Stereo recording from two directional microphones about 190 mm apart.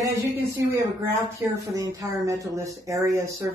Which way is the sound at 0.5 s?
15° right (ahead or behind).